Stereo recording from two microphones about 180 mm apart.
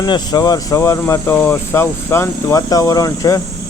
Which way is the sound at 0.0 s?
25° left (ahead or behind).